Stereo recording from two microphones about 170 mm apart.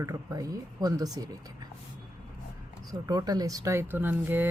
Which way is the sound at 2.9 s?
20° right (ahead or behind).